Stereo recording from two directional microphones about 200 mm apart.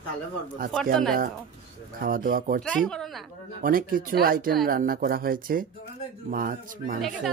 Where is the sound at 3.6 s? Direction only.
45° right (ahead or behind).